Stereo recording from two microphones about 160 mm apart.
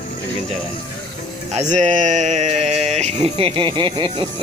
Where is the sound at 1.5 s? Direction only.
50° right (ahead or behind).